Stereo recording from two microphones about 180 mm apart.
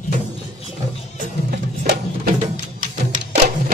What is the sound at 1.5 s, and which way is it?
Music, 50° right (ahead or behind).